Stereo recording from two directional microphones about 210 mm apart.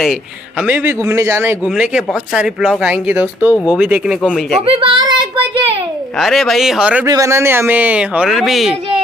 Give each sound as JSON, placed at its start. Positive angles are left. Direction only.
{"t": 0.7, "sound": "a man's voice", "side_deg": -10}
{"t": 4.6, "sound": "speech", "side_deg": -25}
{"t": 6.1, "sound": "a man's voice", "side_deg": 0}